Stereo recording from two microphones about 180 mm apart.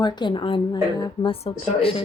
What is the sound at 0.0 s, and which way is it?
Speech, 25° left (ahead or behind).